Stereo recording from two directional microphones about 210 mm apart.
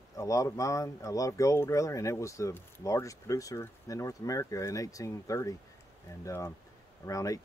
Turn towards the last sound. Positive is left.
turn(degrees=15)  # may be behind; listen again after turning